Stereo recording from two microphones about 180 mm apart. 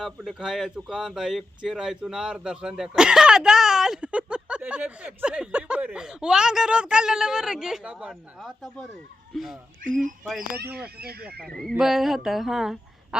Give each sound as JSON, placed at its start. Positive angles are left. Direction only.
{"t": 0.0, "sound": "speech", "side_deg": 0}
{"t": 10.4, "sound": "speech", "side_deg": -60}
{"t": 11.4, "sound": "speech", "side_deg": 0}